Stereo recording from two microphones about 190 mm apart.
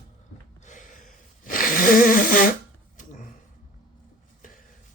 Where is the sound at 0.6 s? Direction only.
40° left (ahead or behind).